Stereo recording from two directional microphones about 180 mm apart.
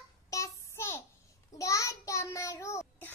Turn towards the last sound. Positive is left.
turn(degrees=15)  # may be behind; listen again after turning